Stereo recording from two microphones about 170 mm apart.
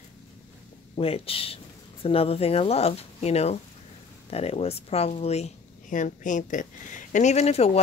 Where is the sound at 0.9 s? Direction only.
35° left (ahead or behind).